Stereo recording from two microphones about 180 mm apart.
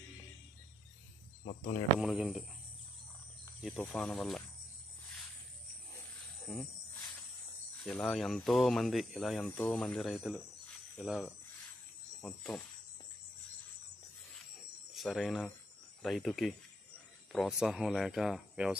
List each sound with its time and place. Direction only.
1.4 s speech: 45° left (ahead or behind)
2.0 s speech: 5° right (ahead or behind)
3.6 s speech: 5° left (ahead or behind)
7.8 s speech: centre (ahead or behind)
15.0 s speech: centre (ahead or behind)